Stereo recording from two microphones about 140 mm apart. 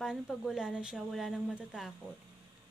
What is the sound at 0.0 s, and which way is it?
Speech, 5° right (ahead or behind).